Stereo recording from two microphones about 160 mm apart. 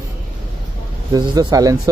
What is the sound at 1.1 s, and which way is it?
Speech, 25° right (ahead or behind).